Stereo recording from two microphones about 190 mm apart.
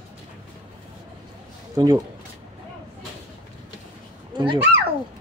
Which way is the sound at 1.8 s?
20° right (ahead or behind).